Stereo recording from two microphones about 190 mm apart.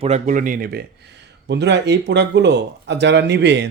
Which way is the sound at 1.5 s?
65° right (ahead or behind).